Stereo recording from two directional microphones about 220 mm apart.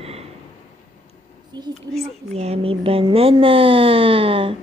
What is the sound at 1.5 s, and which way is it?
Speech, 20° right (ahead or behind).